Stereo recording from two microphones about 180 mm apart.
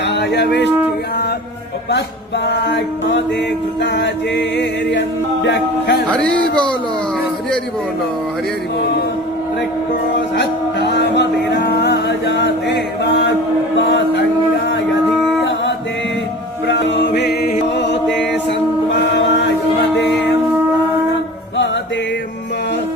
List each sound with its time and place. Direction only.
0.0 s speech: 70° left (ahead or behind)
2.5 s music: 70° left (ahead or behind)
10.3 s music: 70° left (ahead or behind)
13.7 s a sound: 70° left (ahead or behind)
16.6 s music: 75° left (ahead or behind)
17.2 s music: 65° left (ahead or behind)
17.7 s chant: 75° left (ahead or behind)